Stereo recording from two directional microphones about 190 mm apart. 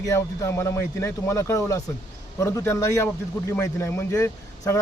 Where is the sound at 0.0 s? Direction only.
15° left (ahead or behind).